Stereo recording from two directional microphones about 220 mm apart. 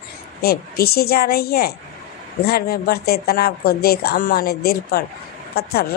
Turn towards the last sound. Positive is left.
turn(degrees=45)  # may be behind; listen again after turning